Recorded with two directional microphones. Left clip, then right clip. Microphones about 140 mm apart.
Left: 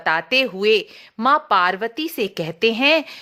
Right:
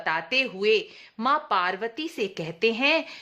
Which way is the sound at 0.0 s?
45° left (ahead or behind).